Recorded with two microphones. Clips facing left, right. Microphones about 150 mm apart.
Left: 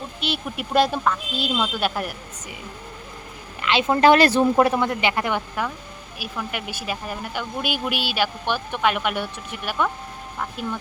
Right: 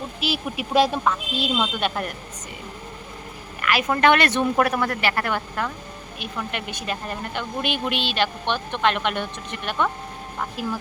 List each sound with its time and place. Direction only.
0.2 s speech: centre (ahead or behind)
3.6 s a woman's voice: 25° left (ahead or behind)
6.1 s a woman's voice: 5° left (ahead or behind)
10.3 s speech: 5° right (ahead or behind)